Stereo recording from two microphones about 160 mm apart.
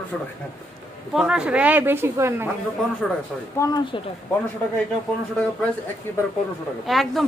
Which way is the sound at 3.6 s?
25° left (ahead or behind).